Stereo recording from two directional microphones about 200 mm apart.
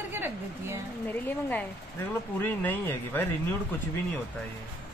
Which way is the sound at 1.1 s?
10° left (ahead or behind).